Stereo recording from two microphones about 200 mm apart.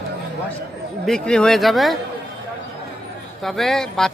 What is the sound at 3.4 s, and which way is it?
Speech, centre (ahead or behind).